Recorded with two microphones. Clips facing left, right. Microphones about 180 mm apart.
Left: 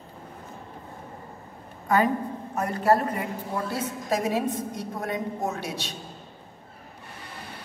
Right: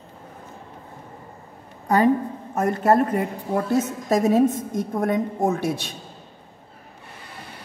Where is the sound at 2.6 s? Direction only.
45° right (ahead or behind).